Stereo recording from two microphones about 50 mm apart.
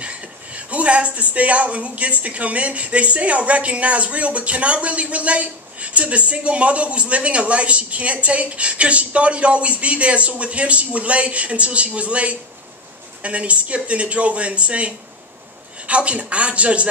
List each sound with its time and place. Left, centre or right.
0.0 s speech: right